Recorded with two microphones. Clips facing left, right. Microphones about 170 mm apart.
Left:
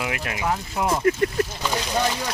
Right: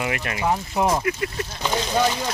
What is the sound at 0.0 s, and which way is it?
Speech, centre (ahead or behind).